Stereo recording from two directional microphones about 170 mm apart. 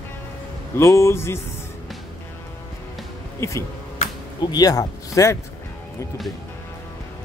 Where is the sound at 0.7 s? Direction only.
15° left (ahead or behind).